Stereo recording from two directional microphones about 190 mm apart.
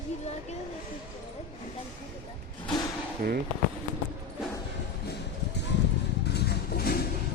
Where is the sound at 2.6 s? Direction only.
20° left (ahead or behind).